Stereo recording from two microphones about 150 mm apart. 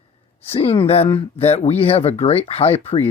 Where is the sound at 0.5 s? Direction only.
40° left (ahead or behind).